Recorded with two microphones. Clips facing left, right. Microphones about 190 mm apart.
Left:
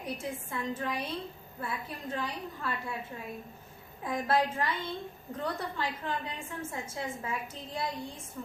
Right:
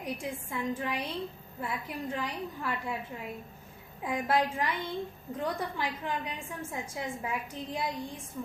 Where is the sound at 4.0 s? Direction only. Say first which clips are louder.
Even; 15° right (ahead or behind).